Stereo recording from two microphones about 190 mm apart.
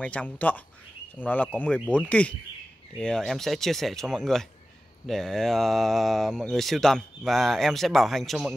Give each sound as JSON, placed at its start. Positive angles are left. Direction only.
{"t": 0.0, "sound": "speech", "side_deg": 5}